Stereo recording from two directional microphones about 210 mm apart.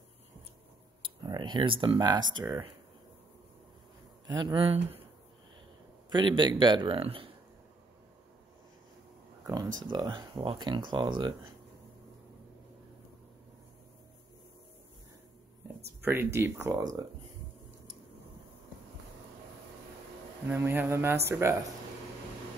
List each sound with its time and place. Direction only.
1.0 s speech: 20° right (ahead or behind)
4.3 s speech: 20° right (ahead or behind)
6.0 s speech: 20° right (ahead or behind)
9.8 s speech: 20° right (ahead or behind)
16.0 s speech: 10° right (ahead or behind)
20.4 s speech: 10° right (ahead or behind)